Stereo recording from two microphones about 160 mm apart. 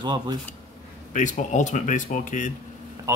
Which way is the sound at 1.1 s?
50° left (ahead or behind).